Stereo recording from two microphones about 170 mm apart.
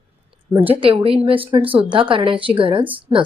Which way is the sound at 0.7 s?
35° right (ahead or behind).